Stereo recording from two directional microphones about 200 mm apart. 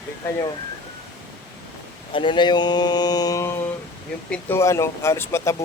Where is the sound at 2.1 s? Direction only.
25° left (ahead or behind).